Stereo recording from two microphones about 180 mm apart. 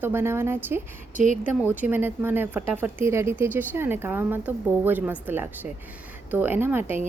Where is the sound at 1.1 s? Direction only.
45° right (ahead or behind).